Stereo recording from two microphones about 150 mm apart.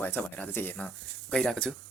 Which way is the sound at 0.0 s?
10° left (ahead or behind).